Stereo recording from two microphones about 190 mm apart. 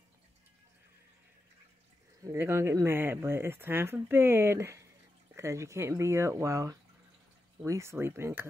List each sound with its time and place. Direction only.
2.2 s speech: 15° right (ahead or behind)